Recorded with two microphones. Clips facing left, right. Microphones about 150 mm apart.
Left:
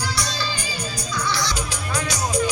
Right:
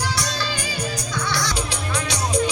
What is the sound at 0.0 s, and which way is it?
Music, 60° right (ahead or behind).